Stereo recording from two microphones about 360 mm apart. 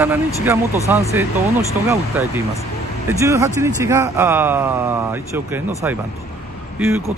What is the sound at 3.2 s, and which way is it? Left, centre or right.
Speech, centre.